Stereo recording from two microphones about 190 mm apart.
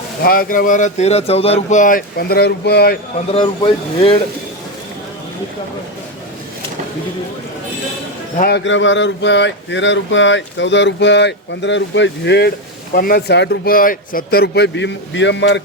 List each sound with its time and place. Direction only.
0.2 s speech: 50° left (ahead or behind)
3.3 s speech: 30° left (ahead or behind)
8.4 s speech: 60° left (ahead or behind)
12.9 s speech: 50° left (ahead or behind); by 15.6 s 70° left (ahead or behind)